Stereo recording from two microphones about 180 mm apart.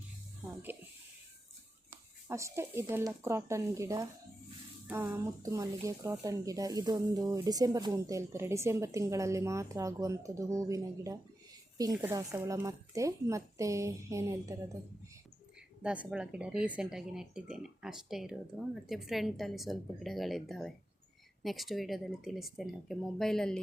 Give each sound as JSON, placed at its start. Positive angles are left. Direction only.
{"t": 1.9, "sound": "speech", "side_deg": -15}
{"t": 15.8, "sound": "speech", "side_deg": -5}